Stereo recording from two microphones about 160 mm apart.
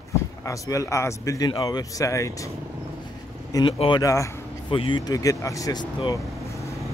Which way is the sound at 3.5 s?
30° left (ahead or behind).